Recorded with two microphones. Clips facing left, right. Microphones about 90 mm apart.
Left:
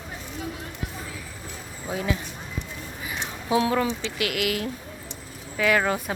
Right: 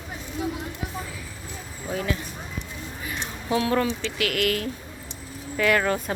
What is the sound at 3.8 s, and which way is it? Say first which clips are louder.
Speech: right 1 dB; 20° left (ahead or behind).